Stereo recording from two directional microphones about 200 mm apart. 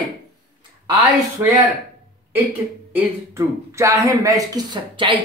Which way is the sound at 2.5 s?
10° right (ahead or behind).